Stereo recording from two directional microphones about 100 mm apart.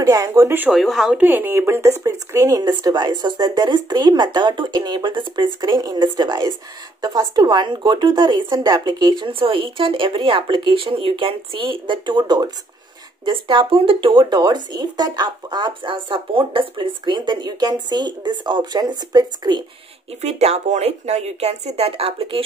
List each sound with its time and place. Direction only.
0.0 s speech: 40° right (ahead or behind)
0.3 s speech: 25° right (ahead or behind)
0.7 s speech: centre (ahead or behind)
1.2 s speech: 20° right (ahead or behind); by 19.6 s 45° right (ahead or behind)
20.2 s speech: 90° right; by 22.4 s 70° right (ahead or behind)